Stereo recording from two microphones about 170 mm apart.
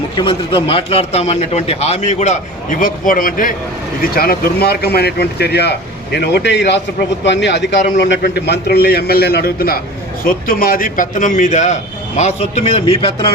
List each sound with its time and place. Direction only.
0.2 s a man's voice: 30° left (ahead or behind); by 5.7 s 75° left (ahead or behind)
6.1 s a man's voice: 85° left; by 13.1 s 35° left (ahead or behind)